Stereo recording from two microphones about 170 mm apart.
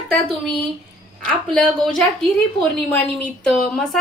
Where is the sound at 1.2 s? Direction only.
5° left (ahead or behind).